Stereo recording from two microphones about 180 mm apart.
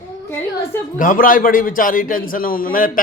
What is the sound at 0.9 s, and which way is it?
A man's voice, 50° left (ahead or behind).